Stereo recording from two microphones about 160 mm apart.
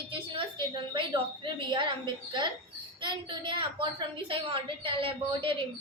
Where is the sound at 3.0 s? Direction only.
30° right (ahead or behind).